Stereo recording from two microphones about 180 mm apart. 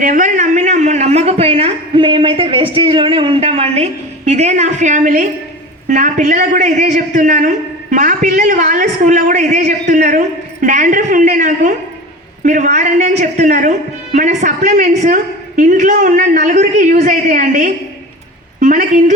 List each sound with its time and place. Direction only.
0.0 s a woman's voice: 45° right (ahead or behind)